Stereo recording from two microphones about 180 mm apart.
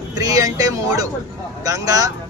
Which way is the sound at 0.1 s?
20° right (ahead or behind).